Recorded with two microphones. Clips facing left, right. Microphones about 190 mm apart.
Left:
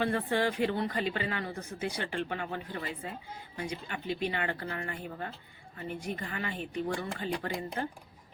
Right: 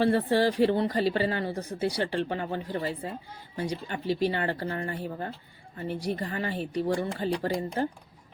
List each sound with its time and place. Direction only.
0.0 s a woman's voice: 35° right (ahead or behind)